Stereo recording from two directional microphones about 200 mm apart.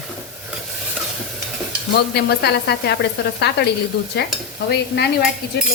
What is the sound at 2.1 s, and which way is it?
Speech, 55° left (ahead or behind).